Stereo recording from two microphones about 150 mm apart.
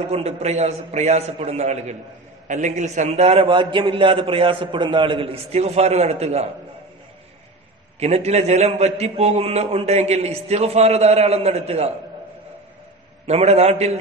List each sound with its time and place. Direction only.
0.0 s a man's voice: 45° right (ahead or behind)
8.0 s a man's voice: 45° right (ahead or behind)
13.3 s a man's voice: 45° right (ahead or behind)